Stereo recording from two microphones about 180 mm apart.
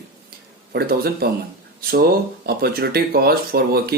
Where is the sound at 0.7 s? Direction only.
60° right (ahead or behind).